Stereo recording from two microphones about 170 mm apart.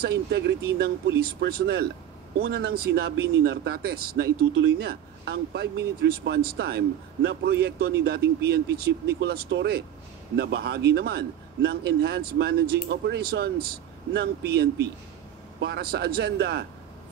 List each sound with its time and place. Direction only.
0.0 s speech: 75° right (ahead or behind)
1.4 s a man's voice: 70° right (ahead or behind)
8.0 s a man's voice: 70° right (ahead or behind)